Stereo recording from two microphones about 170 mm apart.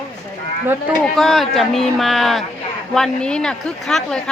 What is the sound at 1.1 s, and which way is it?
A woman's voice, centre (ahead or behind).